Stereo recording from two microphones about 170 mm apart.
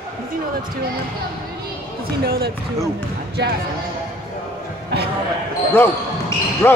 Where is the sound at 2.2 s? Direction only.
65° right (ahead or behind).